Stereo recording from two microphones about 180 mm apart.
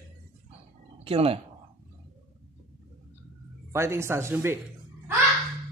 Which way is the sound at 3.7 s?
15° right (ahead or behind).